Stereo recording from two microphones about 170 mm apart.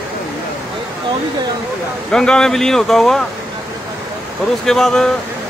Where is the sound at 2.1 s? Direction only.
5° left (ahead or behind).